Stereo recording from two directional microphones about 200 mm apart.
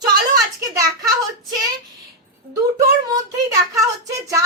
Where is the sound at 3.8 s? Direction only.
15° right (ahead or behind).